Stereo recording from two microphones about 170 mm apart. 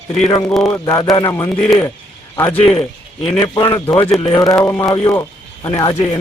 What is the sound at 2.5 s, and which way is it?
A man's voice, 35° left (ahead or behind).